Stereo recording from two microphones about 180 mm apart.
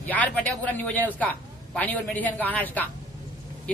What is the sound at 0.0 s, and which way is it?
A man's voice, 10° left (ahead or behind).